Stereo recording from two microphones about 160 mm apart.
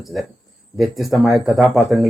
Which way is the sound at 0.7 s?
Centre (ahead or behind).